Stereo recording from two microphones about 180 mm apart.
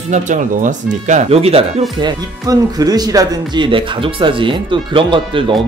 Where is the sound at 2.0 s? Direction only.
20° right (ahead or behind).